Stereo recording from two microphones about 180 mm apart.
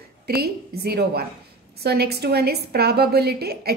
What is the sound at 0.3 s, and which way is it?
A woman's voice, 60° right (ahead or behind).